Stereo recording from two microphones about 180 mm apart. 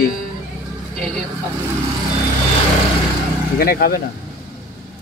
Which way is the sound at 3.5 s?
55° left (ahead or behind).